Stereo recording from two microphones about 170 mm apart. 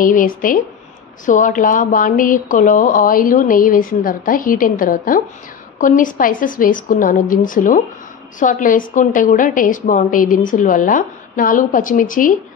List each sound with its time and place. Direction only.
0.0 s a woman's voice: 55° left (ahead or behind)